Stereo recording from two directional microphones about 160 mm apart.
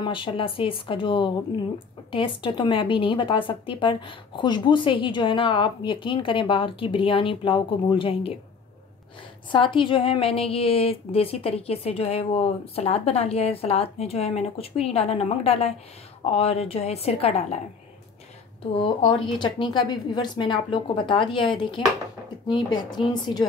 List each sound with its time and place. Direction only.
0.0 s speech: 30° left (ahead or behind)
9.5 s speech: 30° left (ahead or behind)
18.8 s a woman's voice: 30° left (ahead or behind)